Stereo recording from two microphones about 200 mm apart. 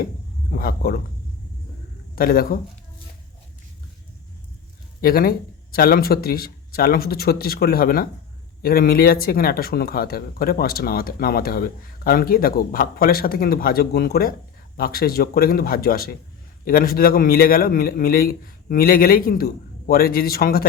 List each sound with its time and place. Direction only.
0.5 s speech: 50° left (ahead or behind)
2.1 s speech: 50° left (ahead or behind)
4.9 s speech: 50° left (ahead or behind)